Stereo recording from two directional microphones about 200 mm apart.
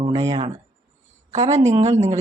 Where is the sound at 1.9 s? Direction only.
35° right (ahead or behind).